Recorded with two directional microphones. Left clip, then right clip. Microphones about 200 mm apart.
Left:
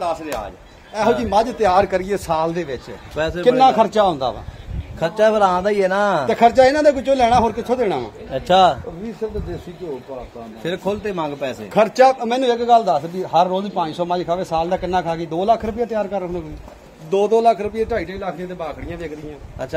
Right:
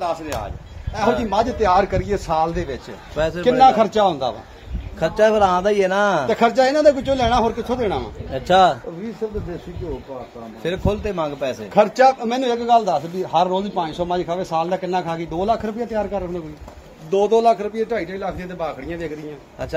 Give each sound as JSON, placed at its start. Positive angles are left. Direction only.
{"t": 0.0, "sound": "speech", "side_deg": 25}
{"t": 1.2, "sound": "a man's voice", "side_deg": 50}
{"t": 3.2, "sound": "a man's voice", "side_deg": 5}
{"t": 3.4, "sound": "a man's voice", "side_deg": 40}
{"t": 4.9, "sound": "a man's voice", "side_deg": 5}
{"t": 6.2, "sound": "a man's voice", "side_deg": 40}
{"t": 8.3, "sound": "a man's voice", "side_deg": 10}
{"t": 10.6, "sound": "a man's voice", "side_deg": 10}
{"t": 11.7, "sound": "a man's voice", "side_deg": 45}
{"t": 17.1, "sound": "speech", "side_deg": 25}